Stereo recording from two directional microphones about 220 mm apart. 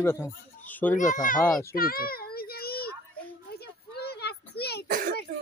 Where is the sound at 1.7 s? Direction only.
40° left (ahead or behind).